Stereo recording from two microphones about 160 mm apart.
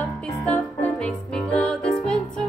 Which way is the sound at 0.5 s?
5° left (ahead or behind).